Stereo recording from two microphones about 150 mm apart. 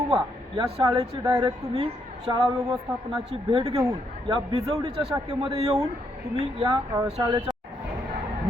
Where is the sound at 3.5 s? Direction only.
40° right (ahead or behind).